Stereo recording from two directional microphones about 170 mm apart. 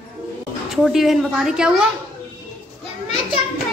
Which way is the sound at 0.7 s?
Centre (ahead or behind).